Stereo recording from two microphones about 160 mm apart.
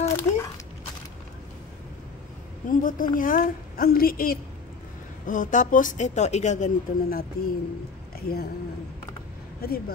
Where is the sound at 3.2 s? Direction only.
60° left (ahead or behind).